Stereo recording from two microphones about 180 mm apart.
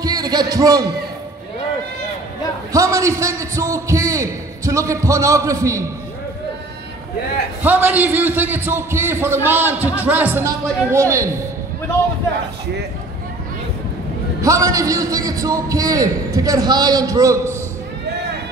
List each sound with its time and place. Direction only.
0.0 s a man's voice: 20° right (ahead or behind)
2.7 s a man's voice: 15° right (ahead or behind)
7.6 s a man's voice: 10° right (ahead or behind)
14.4 s a man's voice: 15° right (ahead or behind)